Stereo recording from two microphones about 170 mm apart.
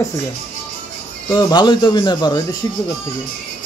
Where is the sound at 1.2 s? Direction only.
25° left (ahead or behind).